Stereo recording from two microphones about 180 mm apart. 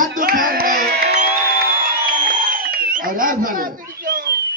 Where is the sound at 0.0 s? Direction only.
50° right (ahead or behind).